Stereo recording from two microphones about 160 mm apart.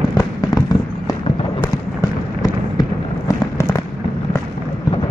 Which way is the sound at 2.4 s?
25° left (ahead or behind).